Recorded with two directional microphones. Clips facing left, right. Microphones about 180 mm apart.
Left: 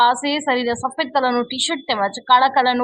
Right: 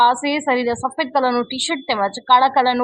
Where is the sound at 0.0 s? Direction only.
15° right (ahead or behind).